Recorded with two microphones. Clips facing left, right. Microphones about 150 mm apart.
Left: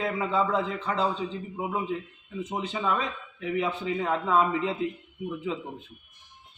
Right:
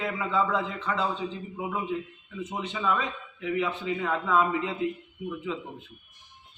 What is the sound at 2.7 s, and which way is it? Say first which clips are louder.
Speech: right 1 dB; 30° left (ahead or behind).